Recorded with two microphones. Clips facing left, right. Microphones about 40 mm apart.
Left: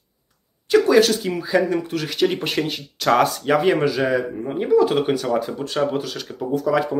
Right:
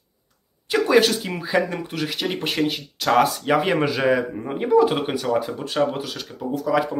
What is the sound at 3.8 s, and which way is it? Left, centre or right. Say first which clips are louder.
Speech: even; right.